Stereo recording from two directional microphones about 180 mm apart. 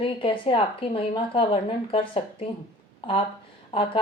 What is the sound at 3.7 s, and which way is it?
Speech, 30° left (ahead or behind).